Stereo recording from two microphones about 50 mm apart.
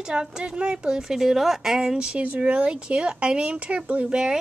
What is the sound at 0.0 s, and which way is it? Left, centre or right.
Speech, centre.